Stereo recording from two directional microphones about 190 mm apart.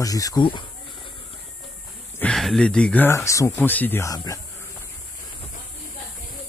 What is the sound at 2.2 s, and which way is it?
Speech, centre (ahead or behind).